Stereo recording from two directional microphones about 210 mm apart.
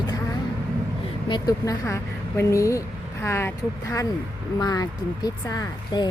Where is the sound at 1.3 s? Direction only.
15° left (ahead or behind).